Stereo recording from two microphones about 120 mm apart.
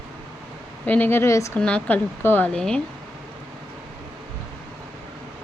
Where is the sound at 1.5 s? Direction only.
10° left (ahead or behind).